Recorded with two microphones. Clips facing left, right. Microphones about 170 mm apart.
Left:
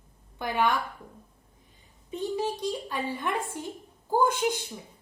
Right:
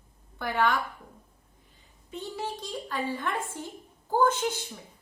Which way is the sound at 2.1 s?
15° left (ahead or behind).